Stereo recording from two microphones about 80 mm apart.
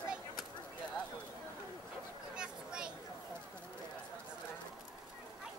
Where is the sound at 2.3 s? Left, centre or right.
Centre.